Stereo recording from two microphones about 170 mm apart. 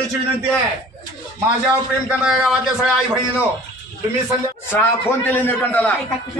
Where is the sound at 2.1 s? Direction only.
5° right (ahead or behind).